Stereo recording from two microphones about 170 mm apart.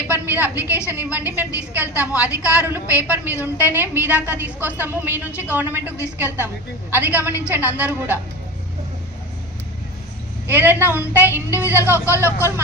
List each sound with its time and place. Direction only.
0.1 s a woman's voice: 10° right (ahead or behind)
2.4 s speech: 15° left (ahead or behind)
2.6 s a woman's voice: 10° right (ahead or behind)
10.4 s a woman's voice: 10° right (ahead or behind)
12.1 s speech: 15° left (ahead or behind)